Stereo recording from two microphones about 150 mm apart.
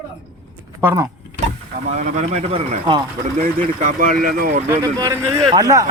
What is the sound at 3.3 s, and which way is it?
Speech, 60° right (ahead or behind).